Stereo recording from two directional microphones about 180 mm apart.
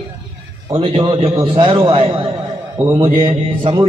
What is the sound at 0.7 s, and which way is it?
A man's voice, 30° right (ahead or behind).